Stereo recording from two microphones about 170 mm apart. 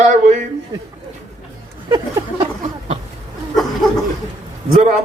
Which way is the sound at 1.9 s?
25° right (ahead or behind).